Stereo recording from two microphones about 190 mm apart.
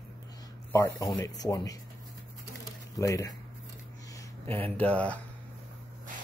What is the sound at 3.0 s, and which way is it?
Speech, 15° left (ahead or behind).